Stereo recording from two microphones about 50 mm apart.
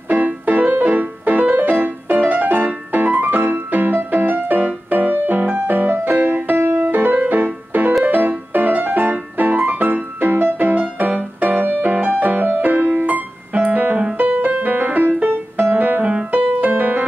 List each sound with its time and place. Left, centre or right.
0.1 s music: right